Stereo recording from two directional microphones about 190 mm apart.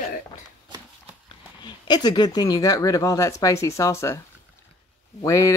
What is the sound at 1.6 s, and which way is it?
Speech, 20° left (ahead or behind).